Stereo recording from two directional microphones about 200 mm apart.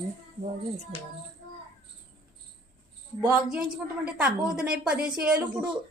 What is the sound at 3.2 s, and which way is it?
A woman's voice, 5° right (ahead or behind).